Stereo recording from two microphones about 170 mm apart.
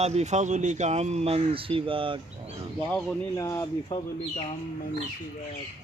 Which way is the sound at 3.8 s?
35° left (ahead or behind).